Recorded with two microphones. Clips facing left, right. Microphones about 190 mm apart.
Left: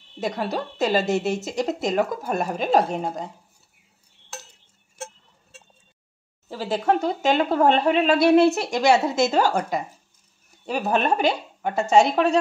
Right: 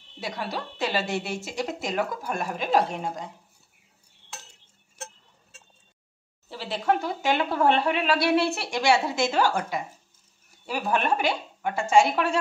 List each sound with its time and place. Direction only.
0.2 s a woman's voice: 45° left (ahead or behind)
6.5 s a woman's voice: 45° left (ahead or behind)
10.7 s a woman's voice: 40° left (ahead or behind)